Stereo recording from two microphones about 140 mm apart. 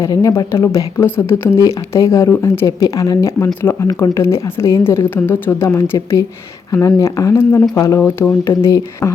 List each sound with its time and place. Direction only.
0.0 s speech: 25° left (ahead or behind)